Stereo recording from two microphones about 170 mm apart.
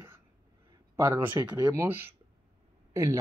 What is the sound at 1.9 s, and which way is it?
Speech, 10° right (ahead or behind).